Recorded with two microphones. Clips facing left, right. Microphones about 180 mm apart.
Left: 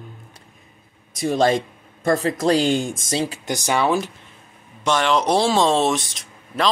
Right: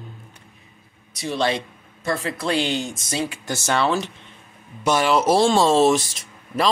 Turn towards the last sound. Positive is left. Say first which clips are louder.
# right 1 dB
turn(degrees=0)  # may be behind; listen again after turning